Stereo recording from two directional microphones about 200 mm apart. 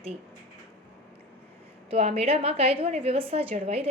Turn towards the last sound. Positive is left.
turn(degrees=-30)  # may be behind; listen again after turning